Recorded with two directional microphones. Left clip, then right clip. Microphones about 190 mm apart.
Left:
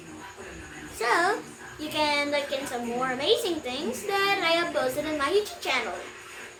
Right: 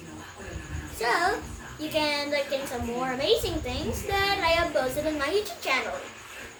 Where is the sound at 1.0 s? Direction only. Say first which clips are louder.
Left 1 dB; 20° left (ahead or behind).